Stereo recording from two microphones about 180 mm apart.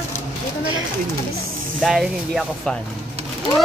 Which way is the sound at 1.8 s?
Centre (ahead or behind).